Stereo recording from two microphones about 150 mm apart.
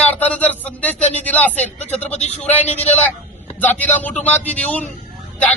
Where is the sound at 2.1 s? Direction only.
45° left (ahead or behind).